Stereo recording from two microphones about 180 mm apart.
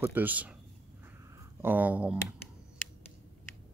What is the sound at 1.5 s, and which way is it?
Speech, 10° right (ahead or behind).